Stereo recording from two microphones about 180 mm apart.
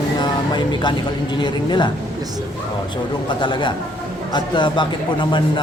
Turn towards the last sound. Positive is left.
turn(degrees=25)  # may be behind; listen again after turning